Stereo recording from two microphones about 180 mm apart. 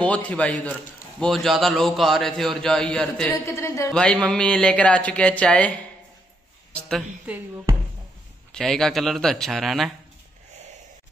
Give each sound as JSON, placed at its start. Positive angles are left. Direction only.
{"t": 0.0, "sound": "a man's voice", "side_deg": 5}
{"t": 3.4, "sound": "a man's voice", "side_deg": 15}
{"t": 3.9, "sound": "a man's voice", "side_deg": 5}
{"t": 6.7, "sound": "a woman's voice", "side_deg": 0}
{"t": 8.5, "sound": "a man's voice", "side_deg": 5}